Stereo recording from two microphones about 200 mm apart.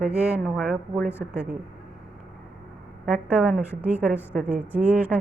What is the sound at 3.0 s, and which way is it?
A woman's voice, 5° right (ahead or behind).